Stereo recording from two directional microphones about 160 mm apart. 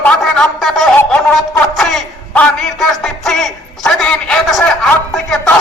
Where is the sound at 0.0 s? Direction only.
5° left (ahead or behind).